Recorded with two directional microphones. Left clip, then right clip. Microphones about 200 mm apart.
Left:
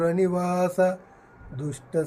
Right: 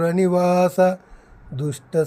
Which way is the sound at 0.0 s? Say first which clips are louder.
Right 5 dB; 50° right (ahead or behind).